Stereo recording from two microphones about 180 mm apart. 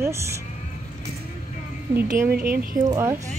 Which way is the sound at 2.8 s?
15° right (ahead or behind).